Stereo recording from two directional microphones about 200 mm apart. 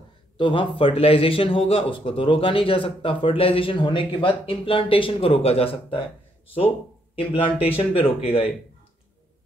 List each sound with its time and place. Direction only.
0.4 s speech: 25° left (ahead or behind)